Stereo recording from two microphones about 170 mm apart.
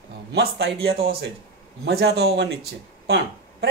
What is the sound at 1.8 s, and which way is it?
Speech, 80° right.